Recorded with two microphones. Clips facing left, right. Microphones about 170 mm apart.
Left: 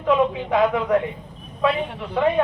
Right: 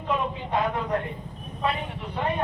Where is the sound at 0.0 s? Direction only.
90° left.